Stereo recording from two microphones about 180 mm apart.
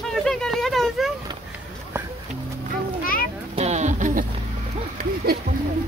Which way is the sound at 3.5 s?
40° right (ahead or behind).